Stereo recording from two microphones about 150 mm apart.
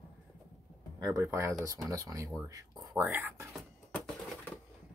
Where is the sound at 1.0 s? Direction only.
25° right (ahead or behind).